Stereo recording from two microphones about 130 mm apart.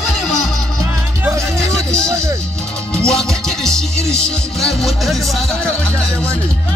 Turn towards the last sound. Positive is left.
turn(degrees=0)  # may be behind; listen again after turning